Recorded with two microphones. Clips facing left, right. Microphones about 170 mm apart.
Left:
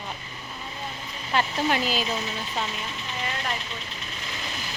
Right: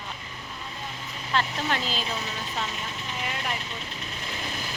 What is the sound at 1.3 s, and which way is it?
Speech, 10° left (ahead or behind).